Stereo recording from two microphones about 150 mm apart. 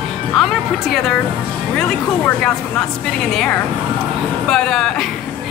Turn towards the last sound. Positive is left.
turn(degrees=5)  # may be behind; listen again after turning